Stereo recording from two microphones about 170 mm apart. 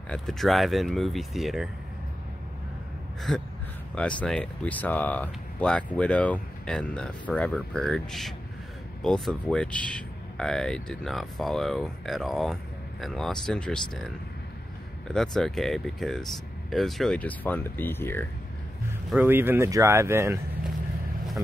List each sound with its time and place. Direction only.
0.1 s speech: centre (ahead or behind)
3.2 s gasp: centre (ahead or behind)
3.9 s speech: 5° left (ahead or behind)
19.2 s speech: 10° right (ahead or behind)